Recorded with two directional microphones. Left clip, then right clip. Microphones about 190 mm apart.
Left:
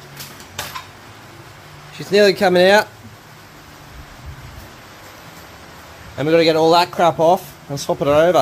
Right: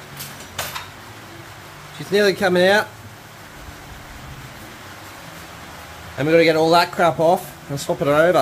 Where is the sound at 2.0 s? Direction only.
25° left (ahead or behind).